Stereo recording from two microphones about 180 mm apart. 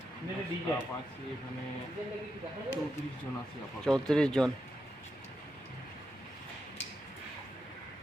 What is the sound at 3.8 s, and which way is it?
Speech, 5° left (ahead or behind).